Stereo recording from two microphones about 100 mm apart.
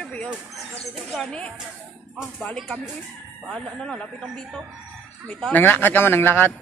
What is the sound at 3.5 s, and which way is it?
A woman's voice, 5° left (ahead or behind).